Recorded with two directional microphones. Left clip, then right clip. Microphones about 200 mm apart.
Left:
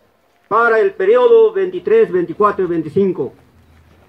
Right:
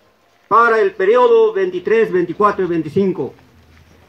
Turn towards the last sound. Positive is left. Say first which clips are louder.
# left 1 dB
turn(degrees=-45)  # may be behind; listen again after turning